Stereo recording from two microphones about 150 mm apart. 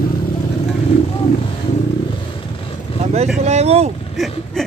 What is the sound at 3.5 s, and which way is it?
Vehicle, 45° right (ahead or behind).